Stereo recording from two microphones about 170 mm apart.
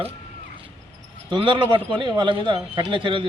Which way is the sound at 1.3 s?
30° right (ahead or behind).